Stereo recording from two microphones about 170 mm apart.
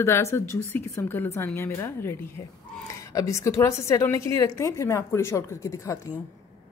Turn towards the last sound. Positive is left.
turn(degrees=15)  # may be behind; listen again after turning